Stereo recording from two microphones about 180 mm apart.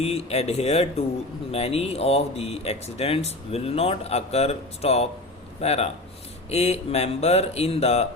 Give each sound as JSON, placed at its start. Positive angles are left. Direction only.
{"t": 0.0, "sound": "speech", "side_deg": 35}